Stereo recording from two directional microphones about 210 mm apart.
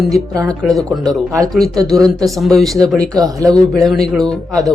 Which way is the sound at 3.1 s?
15° right (ahead or behind).